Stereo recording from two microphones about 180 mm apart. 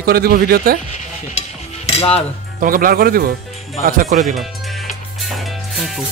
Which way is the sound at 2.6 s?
50° right (ahead or behind).